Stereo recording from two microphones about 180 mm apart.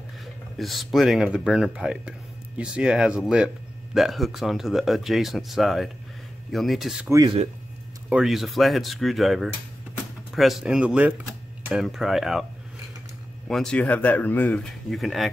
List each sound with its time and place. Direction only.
0.2 s speech: centre (ahead or behind)
7.1 s speech: 20° right (ahead or behind)
8.1 s speech: centre (ahead or behind)
13.5 s speech: 5° left (ahead or behind)